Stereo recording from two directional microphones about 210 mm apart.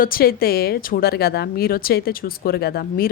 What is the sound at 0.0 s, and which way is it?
Speech, 45° left (ahead or behind).